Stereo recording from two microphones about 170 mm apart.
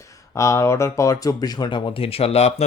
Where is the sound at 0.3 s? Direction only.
15° left (ahead or behind).